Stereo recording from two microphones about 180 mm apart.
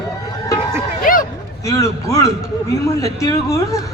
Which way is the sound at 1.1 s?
50° left (ahead or behind).